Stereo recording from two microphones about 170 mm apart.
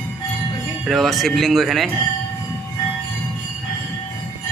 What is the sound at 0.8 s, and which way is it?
Speech, centre (ahead or behind).